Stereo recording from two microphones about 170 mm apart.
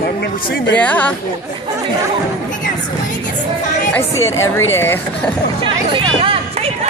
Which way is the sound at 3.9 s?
15° left (ahead or behind).